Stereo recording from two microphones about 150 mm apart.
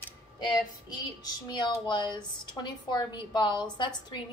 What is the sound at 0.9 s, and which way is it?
A woman's voice, 25° left (ahead or behind).